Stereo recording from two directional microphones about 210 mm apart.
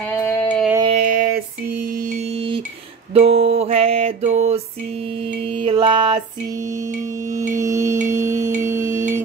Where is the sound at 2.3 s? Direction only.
25° right (ahead or behind).